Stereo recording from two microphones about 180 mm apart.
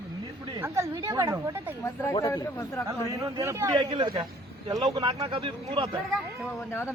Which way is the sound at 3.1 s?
20° right (ahead or behind).